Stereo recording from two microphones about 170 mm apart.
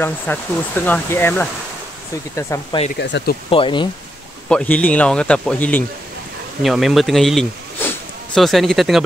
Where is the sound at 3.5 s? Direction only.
30° left (ahead or behind).